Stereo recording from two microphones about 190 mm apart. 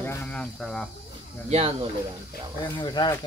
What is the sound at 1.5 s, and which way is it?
Speech, 30° right (ahead or behind).